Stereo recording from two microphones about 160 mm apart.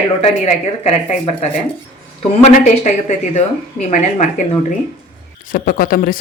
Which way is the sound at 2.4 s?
50° left (ahead or behind).